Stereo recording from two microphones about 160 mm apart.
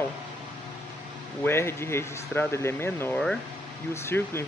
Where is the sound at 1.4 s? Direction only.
15° left (ahead or behind).